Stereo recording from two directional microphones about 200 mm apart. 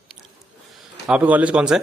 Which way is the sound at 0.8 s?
5° right (ahead or behind).